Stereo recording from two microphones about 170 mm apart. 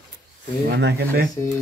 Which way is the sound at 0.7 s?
85° right.